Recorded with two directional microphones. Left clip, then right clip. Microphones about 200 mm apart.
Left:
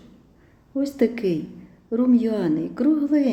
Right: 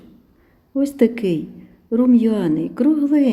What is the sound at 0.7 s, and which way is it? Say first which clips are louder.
A woman's voice: right 5 dB; 30° right (ahead or behind).